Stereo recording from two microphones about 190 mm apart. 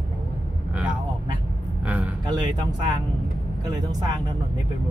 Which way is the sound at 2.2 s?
25° right (ahead or behind).